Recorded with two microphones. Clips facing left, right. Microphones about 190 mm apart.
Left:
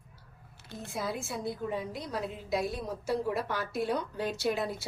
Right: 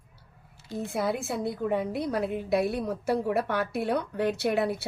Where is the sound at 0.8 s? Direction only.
60° right (ahead or behind).